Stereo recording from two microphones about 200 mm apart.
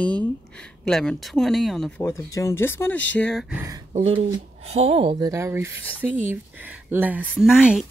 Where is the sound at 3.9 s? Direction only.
30° right (ahead or behind).